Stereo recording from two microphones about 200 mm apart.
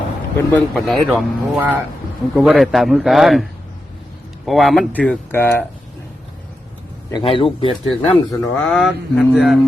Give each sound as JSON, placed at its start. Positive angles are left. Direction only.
{"t": 0.5, "sound": "speech", "side_deg": 0}
{"t": 4.4, "sound": "speech", "side_deg": 0}
{"t": 7.1, "sound": "speech", "side_deg": 25}
{"t": 8.4, "sound": "speech", "side_deg": 5}